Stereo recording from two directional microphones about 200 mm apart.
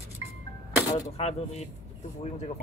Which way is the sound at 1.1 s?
35° left (ahead or behind).